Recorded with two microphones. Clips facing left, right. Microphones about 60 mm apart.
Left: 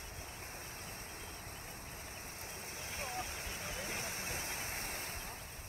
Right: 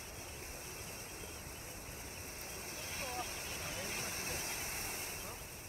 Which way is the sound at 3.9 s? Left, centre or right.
Left.